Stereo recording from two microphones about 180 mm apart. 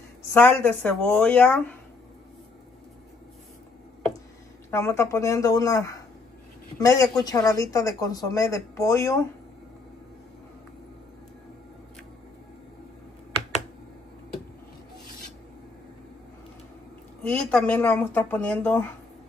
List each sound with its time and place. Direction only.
0.3 s speech: 10° left (ahead or behind)
4.6 s a woman's voice: 15° left (ahead or behind)
17.2 s speech: 5° left (ahead or behind)